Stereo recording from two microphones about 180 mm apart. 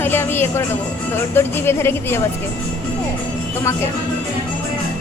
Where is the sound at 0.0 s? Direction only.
10° left (ahead or behind).